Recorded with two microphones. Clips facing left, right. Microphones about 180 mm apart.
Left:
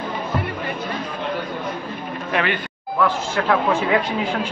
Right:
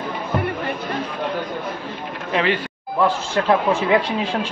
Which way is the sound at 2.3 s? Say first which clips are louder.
Right 3 dB; 25° right (ahead or behind).